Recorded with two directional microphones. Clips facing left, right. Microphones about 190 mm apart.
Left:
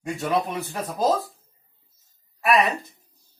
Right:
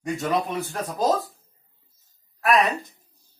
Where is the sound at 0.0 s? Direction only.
Centre (ahead or behind).